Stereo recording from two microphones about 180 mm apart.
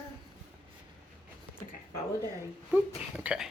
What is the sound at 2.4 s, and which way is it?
A woman's voice, 10° right (ahead or behind).